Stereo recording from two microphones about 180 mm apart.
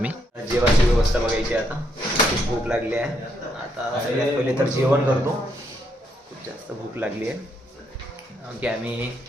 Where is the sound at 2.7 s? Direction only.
5° right (ahead or behind).